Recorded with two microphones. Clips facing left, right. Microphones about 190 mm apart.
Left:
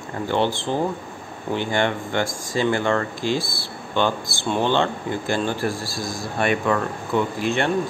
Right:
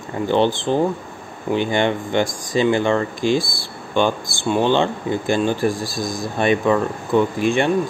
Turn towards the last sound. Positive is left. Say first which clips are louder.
# right 4 dB
turn(degrees=-15)  # may be behind; listen again after turning